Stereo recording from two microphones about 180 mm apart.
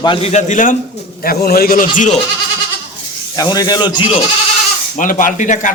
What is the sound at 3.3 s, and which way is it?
Speech, 20° left (ahead or behind).